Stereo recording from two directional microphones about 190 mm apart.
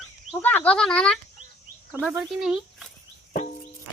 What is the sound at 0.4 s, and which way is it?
Speech, 10° left (ahead or behind).